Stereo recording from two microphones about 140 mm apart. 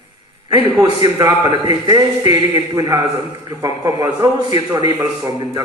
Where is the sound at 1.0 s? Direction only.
25° right (ahead or behind).